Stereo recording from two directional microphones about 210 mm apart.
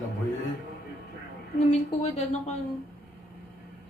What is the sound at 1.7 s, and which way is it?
Speech, 30° left (ahead or behind).